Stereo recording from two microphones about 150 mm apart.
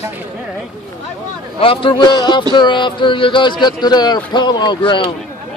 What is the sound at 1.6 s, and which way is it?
Speech, 35° left (ahead or behind).